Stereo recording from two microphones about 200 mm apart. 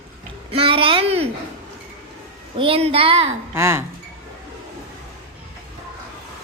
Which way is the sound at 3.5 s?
15° right (ahead or behind).